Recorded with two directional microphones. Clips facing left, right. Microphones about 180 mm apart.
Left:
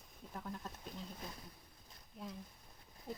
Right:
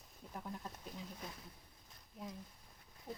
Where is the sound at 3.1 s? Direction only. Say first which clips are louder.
Left 1 dB; 15° right (ahead or behind).